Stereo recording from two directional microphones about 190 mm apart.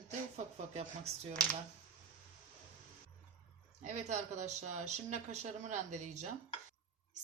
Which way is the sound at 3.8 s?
40° right (ahead or behind).